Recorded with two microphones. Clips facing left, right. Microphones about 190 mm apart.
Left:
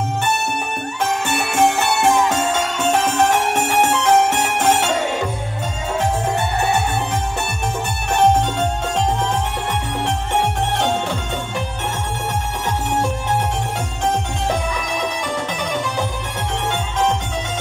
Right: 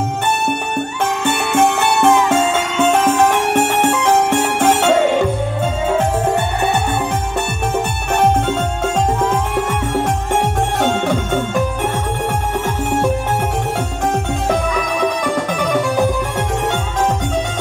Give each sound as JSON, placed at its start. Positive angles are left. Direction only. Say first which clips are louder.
{"t": 1.2, "sound": "music", "louder": "right 3 dB", "side_deg": -55}
{"t": 15.2, "sound": "music", "louder": "right 6 dB", "side_deg": -50}